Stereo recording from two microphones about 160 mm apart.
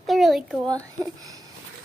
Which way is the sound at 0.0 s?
Centre (ahead or behind).